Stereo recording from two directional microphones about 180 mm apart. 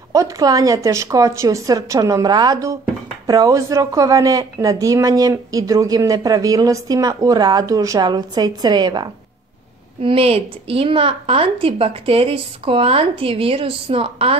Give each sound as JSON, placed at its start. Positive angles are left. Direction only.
{"t": 0.1, "sound": "a woman's voice", "side_deg": -20}